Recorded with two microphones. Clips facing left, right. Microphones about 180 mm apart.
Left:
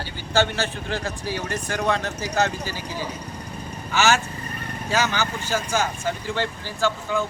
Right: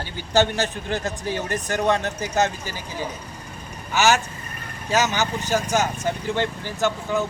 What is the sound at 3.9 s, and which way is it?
Speech, 15° right (ahead or behind).